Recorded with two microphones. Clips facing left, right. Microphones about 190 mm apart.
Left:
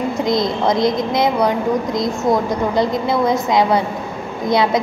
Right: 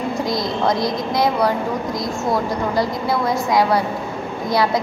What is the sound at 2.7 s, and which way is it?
A woman's voice, 20° left (ahead or behind).